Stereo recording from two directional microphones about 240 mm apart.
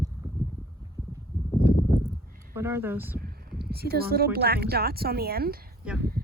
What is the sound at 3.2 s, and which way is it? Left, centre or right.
Speech, right.